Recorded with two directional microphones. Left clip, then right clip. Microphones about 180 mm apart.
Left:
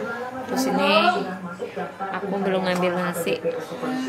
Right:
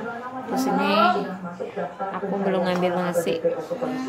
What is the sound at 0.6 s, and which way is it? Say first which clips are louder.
Speech: left 2 dB; 20° right (ahead or behind).